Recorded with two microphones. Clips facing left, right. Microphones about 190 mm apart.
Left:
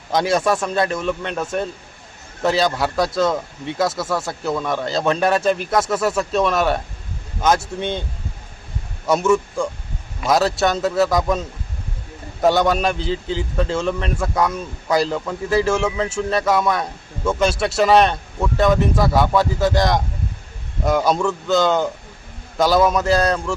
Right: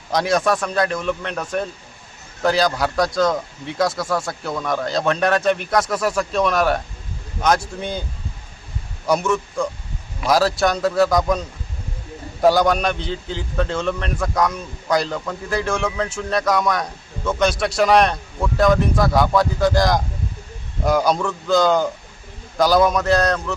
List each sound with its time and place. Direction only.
0.1 s a man's voice: centre (ahead or behind)
9.0 s a man's voice: 5° left (ahead or behind)